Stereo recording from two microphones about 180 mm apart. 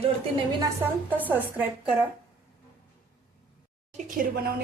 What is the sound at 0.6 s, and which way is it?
A woman's voice, 10° right (ahead or behind).